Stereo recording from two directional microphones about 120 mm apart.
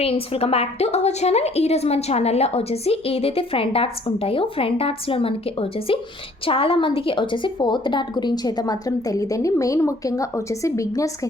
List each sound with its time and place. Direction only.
0.0 s a woman's voice: 55° left (ahead or behind); by 11.3 s 25° left (ahead or behind)